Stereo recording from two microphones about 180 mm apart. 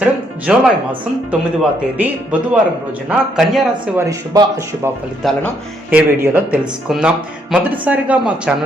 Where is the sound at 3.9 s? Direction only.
15° right (ahead or behind).